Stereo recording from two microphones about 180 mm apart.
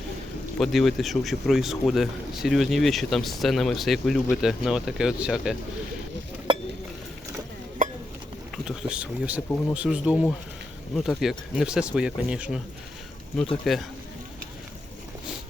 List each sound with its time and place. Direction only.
0.6 s speech: centre (ahead or behind)
6.5 s a sound: 25° right (ahead or behind)
8.5 s speech: 5° right (ahead or behind)
13.7 s speech: centre (ahead or behind)